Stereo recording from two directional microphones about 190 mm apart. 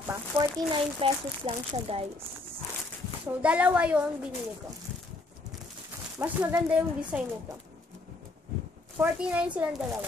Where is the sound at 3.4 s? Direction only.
5° right (ahead or behind).